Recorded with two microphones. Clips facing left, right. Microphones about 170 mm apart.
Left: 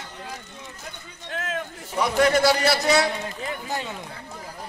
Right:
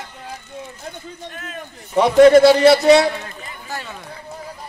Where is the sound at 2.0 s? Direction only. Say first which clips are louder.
Right 10 dB; 25° right (ahead or behind).